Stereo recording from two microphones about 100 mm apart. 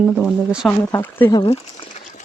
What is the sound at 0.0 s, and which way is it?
Speech, 5° right (ahead or behind).